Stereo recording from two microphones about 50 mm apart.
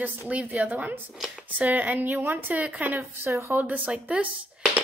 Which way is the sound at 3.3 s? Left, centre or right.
Right.